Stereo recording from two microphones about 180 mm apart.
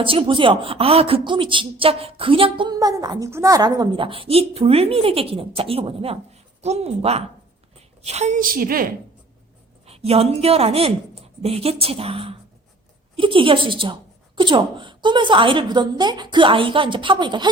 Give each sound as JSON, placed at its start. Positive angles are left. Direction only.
{"t": 0.0, "sound": "a woman's voice", "side_deg": -30}
{"t": 9.8, "sound": "a woman's voice", "side_deg": -35}